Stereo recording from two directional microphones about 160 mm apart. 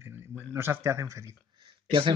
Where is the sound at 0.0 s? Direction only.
10° right (ahead or behind).